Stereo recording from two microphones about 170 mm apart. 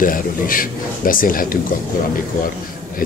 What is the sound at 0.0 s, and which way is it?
Speech, 55° left (ahead or behind).